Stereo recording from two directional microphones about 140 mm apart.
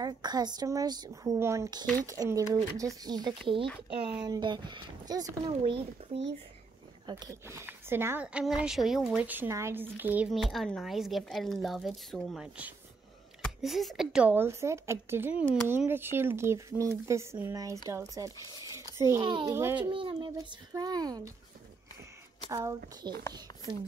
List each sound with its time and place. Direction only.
0.0 s speech: 30° right (ahead or behind)
5.5 s speech: 45° right (ahead or behind)
7.1 s speech: 25° right (ahead or behind); by 10.3 s 10° right (ahead or behind)
10.3 s a woman's voice: centre (ahead or behind); by 19.2 s 20° right (ahead or behind)
19.2 s speech: 35° right (ahead or behind)
19.5 s speech: 15° right (ahead or behind)
19.9 s speech: 40° right (ahead or behind)
22.5 s speech: 25° right (ahead or behind)